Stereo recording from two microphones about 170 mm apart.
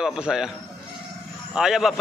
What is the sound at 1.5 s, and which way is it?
Speech, 5° right (ahead or behind).